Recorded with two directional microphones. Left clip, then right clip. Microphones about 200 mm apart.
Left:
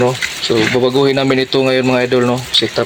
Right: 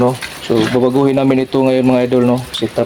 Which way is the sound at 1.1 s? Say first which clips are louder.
Even; 10° right (ahead or behind).